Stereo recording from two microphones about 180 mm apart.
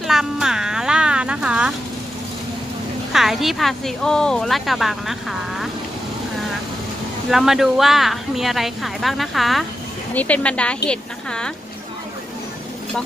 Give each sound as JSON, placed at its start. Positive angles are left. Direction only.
{"t": 0.0, "sound": "music", "side_deg": 0}
{"t": 3.1, "sound": "a woman's voice", "side_deg": 0}
{"t": 7.2, "sound": "a woman's voice", "side_deg": 0}